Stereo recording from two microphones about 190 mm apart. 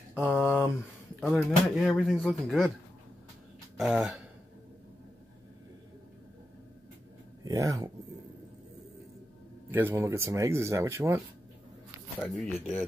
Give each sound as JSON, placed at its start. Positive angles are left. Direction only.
{"t": 0.2, "sound": "speech", "side_deg": 0}
{"t": 3.7, "sound": "speech", "side_deg": -5}
{"t": 7.4, "sound": "speech", "side_deg": -15}
{"t": 9.7, "sound": "speech", "side_deg": -10}
{"t": 12.2, "sound": "speech", "side_deg": 0}